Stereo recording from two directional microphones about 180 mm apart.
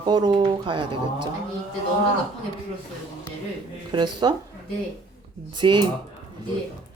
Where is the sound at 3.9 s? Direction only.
25° right (ahead or behind).